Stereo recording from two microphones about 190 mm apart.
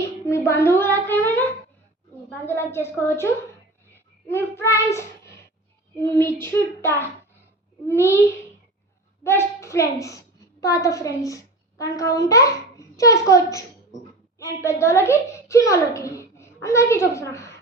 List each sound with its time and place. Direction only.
0.3 s a sound: 15° left (ahead or behind)
2.5 s a child's voice: 10° left (ahead or behind)
4.3 s child singing: 10° left (ahead or behind)
6.0 s a child's voice: 15° left (ahead or behind)
9.2 s a woman's voice: 15° left (ahead or behind)